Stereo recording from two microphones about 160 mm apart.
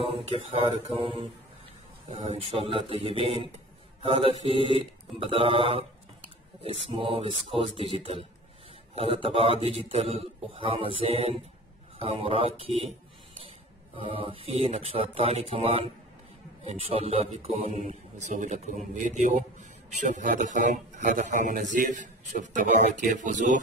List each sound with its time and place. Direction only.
0.0 s speech: 40° right (ahead or behind)
14.0 s a man's voice: 35° right (ahead or behind); by 23.6 s 50° right (ahead or behind)